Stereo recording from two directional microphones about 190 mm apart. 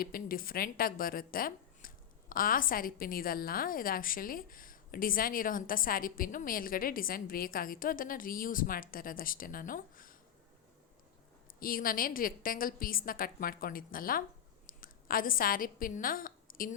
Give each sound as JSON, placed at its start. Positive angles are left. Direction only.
{"t": 0.0, "sound": "a woman's voice", "side_deg": 50}
{"t": 11.6, "sound": "a woman's voice", "side_deg": 50}